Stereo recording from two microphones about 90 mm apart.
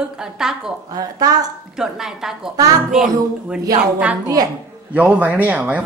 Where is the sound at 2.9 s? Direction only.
10° right (ahead or behind).